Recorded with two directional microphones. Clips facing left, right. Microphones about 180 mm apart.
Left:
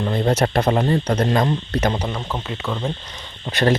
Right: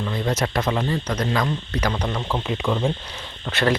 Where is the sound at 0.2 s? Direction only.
30° left (ahead or behind).